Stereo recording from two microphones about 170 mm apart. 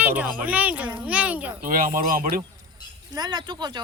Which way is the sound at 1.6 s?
55° right (ahead or behind).